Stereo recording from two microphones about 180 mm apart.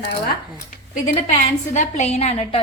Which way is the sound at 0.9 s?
45° left (ahead or behind).